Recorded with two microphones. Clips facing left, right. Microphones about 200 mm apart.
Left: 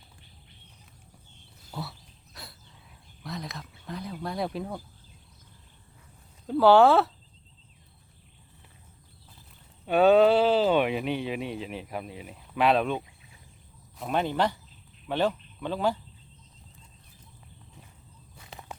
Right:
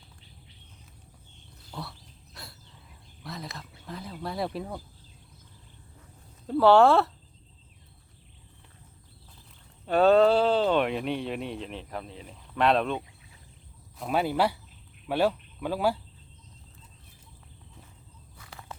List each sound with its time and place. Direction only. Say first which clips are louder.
1.7 s a sound: left 2 dB; centre (ahead or behind)
3.2 s speech: left 2 dB; centre (ahead or behind)
6.5 s speech: even; centre (ahead or behind)
9.8 s speech: left 1 dB; centre (ahead or behind)
14.0 s speech: right 1 dB; 5° right (ahead or behind)
18.3 s a sound: left 1 dB; 20° left (ahead or behind)